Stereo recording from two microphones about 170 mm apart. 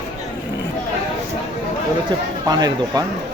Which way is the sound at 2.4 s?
25° right (ahead or behind).